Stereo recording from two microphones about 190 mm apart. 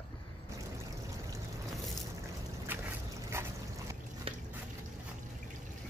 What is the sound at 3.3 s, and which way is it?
Dog, 15° right (ahead or behind).